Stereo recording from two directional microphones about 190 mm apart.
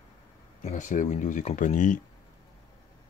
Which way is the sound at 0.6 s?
35° left (ahead or behind).